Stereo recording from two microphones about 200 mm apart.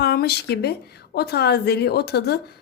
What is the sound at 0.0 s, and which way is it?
A woman's voice, 55° left (ahead or behind).